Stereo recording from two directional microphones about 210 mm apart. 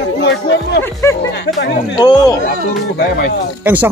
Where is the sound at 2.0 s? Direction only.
20° left (ahead or behind).